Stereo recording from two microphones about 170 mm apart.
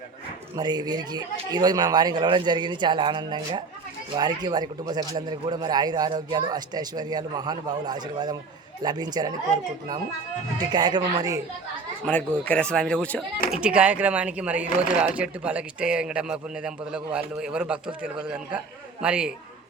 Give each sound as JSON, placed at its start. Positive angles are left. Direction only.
{"t": 0.5, "sound": "speech", "side_deg": -25}
{"t": 10.6, "sound": "speech", "side_deg": -25}
{"t": 12.5, "sound": "speech", "side_deg": 5}
{"t": 13.6, "sound": "speech", "side_deg": -5}